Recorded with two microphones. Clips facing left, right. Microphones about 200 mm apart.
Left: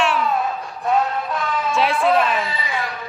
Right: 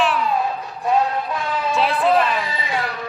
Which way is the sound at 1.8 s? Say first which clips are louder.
Even; centre (ahead or behind).